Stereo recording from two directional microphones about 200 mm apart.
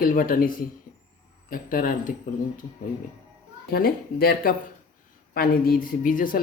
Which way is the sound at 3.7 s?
50° left (ahead or behind).